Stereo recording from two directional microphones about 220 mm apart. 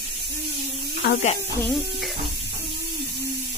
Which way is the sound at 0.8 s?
55° left (ahead or behind).